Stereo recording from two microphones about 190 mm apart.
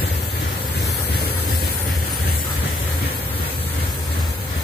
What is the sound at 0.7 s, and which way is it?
Vehicle, 60° left (ahead or behind).